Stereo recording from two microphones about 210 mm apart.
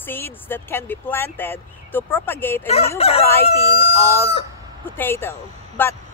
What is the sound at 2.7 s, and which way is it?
Speech, 30° left (ahead or behind).